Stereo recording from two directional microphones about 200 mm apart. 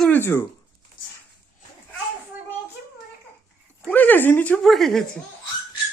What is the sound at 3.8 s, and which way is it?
Speech, 10° left (ahead or behind).